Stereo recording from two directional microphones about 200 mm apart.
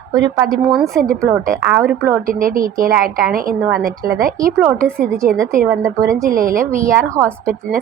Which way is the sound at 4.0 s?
45° right (ahead or behind).